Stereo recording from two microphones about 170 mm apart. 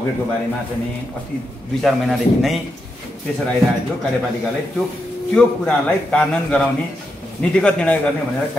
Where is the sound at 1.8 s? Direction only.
Centre (ahead or behind).